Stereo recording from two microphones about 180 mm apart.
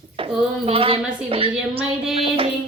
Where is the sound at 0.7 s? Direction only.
30° right (ahead or behind).